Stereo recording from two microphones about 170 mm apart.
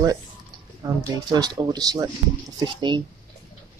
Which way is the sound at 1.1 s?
25° right (ahead or behind).